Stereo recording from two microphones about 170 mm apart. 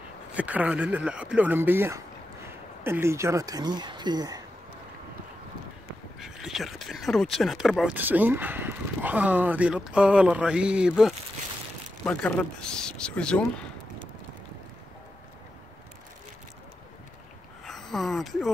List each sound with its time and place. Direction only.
0.4 s speech: 10° right (ahead or behind)
6.1 s speech: centre (ahead or behind)
12.0 s speech: 10° left (ahead or behind)
17.6 s a sound: centre (ahead or behind)